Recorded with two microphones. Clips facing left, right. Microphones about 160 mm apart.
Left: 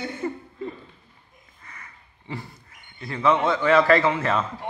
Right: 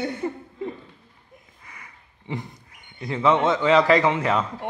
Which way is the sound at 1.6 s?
10° right (ahead or behind).